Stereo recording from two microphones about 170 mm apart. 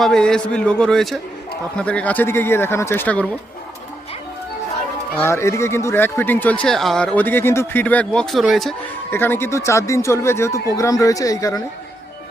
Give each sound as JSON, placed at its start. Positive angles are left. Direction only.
{"t": 0.0, "sound": "a man's voice", "side_deg": 5}
{"t": 5.2, "sound": "speech", "side_deg": 15}
{"t": 9.0, "sound": "speech", "side_deg": 10}